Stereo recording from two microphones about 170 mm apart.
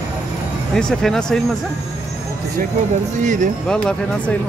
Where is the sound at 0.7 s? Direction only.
5° left (ahead or behind).